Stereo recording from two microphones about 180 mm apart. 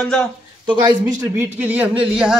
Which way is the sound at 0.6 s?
25° right (ahead or behind).